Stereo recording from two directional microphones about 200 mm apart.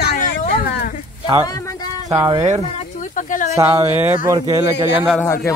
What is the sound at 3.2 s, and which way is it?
Speech, 40° left (ahead or behind).